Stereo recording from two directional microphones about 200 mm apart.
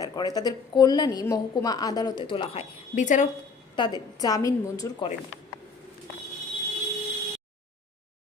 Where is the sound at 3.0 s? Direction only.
40° left (ahead or behind).